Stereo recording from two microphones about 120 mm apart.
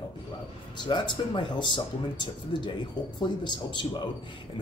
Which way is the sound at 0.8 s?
40° left (ahead or behind).